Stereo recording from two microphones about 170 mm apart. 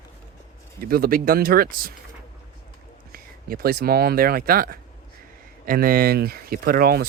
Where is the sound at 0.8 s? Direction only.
60° right (ahead or behind).